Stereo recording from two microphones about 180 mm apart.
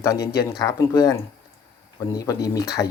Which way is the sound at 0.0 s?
15° left (ahead or behind).